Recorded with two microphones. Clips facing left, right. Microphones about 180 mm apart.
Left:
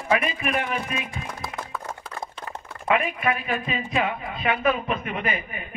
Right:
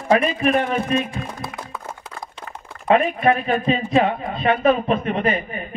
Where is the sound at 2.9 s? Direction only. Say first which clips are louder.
Right 7 dB; 35° right (ahead or behind).